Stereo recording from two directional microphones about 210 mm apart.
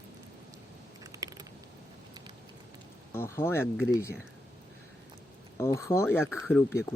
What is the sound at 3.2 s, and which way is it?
Speech, 10° left (ahead or behind).